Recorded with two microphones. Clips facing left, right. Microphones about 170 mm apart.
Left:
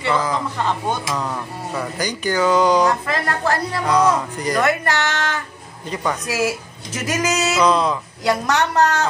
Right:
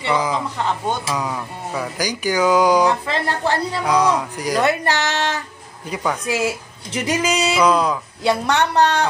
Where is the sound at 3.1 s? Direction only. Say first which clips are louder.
Even; 25° right (ahead or behind).